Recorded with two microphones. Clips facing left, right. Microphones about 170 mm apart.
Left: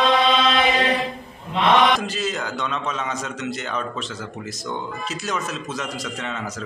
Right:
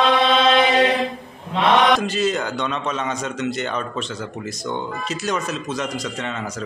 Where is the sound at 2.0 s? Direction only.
Centre (ahead or behind).